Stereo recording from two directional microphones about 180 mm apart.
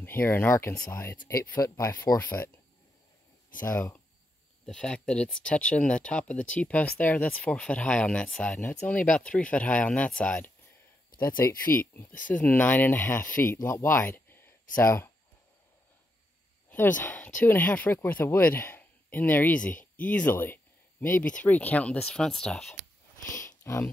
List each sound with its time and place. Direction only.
0.0 s speech: 10° left (ahead or behind)
3.6 s speech: 15° left (ahead or behind)
16.7 s speech: 10° left (ahead or behind)
23.3 s speech: 15° left (ahead or behind)